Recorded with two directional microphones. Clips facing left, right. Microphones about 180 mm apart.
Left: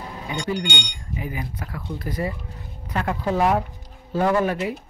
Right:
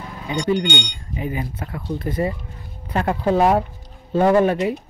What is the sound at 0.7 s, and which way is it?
Speech, 10° left (ahead or behind).